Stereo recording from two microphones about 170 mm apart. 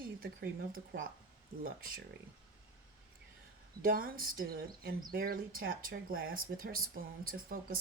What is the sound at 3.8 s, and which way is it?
Speech, 60° right (ahead or behind).